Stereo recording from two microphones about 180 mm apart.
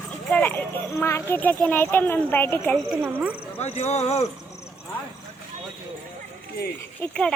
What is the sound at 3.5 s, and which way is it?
Speech, 35° left (ahead or behind).